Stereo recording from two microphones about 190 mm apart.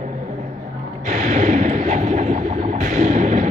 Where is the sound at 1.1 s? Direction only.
40° right (ahead or behind).